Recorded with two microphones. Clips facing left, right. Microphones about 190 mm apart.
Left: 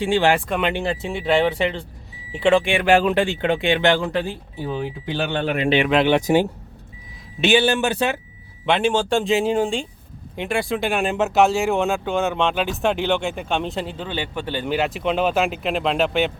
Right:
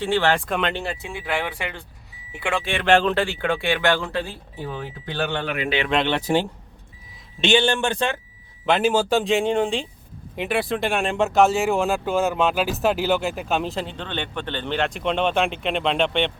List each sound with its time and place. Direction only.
0.0 s speech: 15° left (ahead or behind)
0.3 s speech: centre (ahead or behind)
0.7 s speech: 20° left (ahead or behind)
5.4 s speech: 30° left (ahead or behind)
5.9 s speech: 5° left (ahead or behind)
7.4 s speech: 5° left (ahead or behind)
8.6 s speech: centre (ahead or behind)